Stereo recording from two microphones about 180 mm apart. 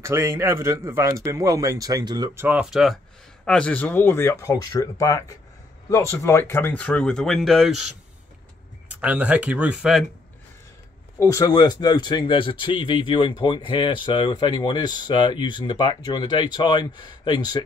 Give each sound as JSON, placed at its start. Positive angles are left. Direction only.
{"t": 0.0, "sound": "a man's voice", "side_deg": -15}
{"t": 11.1, "sound": "a man's voice", "side_deg": 20}